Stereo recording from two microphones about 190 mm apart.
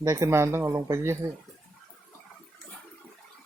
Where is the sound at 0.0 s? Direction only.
15° right (ahead or behind).